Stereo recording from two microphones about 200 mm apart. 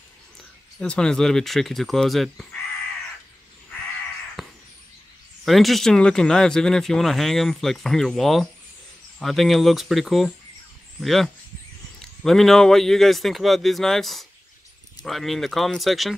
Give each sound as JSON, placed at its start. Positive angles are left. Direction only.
{"t": 0.7, "sound": "speech", "side_deg": 5}
{"t": 4.4, "sound": "a sound", "side_deg": 0}
{"t": 5.4, "sound": "speech", "side_deg": 0}